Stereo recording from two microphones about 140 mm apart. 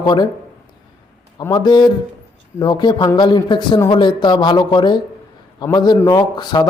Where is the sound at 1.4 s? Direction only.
30° left (ahead or behind).